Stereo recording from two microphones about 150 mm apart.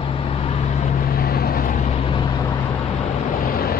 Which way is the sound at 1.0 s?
90° left.